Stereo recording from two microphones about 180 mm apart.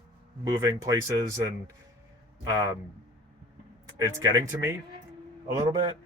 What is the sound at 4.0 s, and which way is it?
Speech, 20° right (ahead or behind).